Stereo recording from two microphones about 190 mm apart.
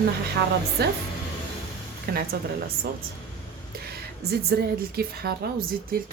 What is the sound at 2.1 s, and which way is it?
Speech, 55° right (ahead or behind).